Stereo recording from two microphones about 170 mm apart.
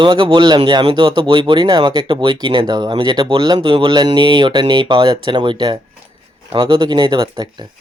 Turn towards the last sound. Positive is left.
turn(degrees=-25)  # may be behind; listen again after turning